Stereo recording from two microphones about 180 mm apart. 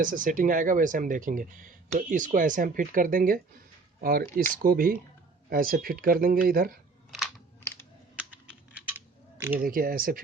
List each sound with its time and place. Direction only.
0.0 s speech: 50° right (ahead or behind)
7.1 s computer keyboard: centre (ahead or behind)
8.3 s typing: 10° right (ahead or behind)
9.6 s speech: 55° right (ahead or behind)